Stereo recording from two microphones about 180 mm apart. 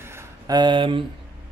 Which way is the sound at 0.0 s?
15° right (ahead or behind).